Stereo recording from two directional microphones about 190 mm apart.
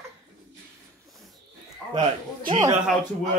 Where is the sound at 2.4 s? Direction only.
25° right (ahead or behind).